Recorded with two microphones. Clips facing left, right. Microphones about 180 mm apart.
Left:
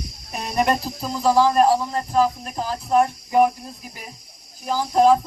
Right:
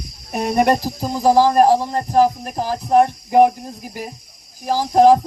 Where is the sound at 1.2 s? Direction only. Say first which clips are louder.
Right 3 dB; 40° right (ahead or behind).